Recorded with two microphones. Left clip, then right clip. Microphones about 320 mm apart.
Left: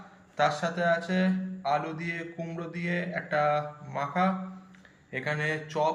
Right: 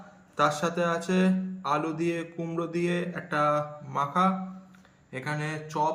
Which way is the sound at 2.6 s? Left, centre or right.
Right.